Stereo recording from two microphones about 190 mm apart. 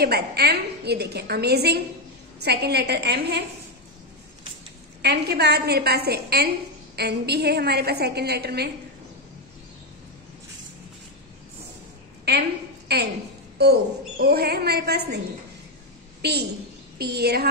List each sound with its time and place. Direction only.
0.0 s a woman's voice: 55° right (ahead or behind)
5.0 s a woman's voice: 60° right (ahead or behind)
12.3 s a woman's voice: 60° right (ahead or behind)
16.2 s a woman's voice: 60° right (ahead or behind)